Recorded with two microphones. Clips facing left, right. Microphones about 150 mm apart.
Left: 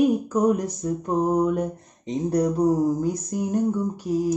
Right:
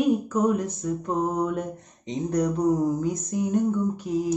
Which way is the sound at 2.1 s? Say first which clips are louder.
Left 2 dB; 35° left (ahead or behind).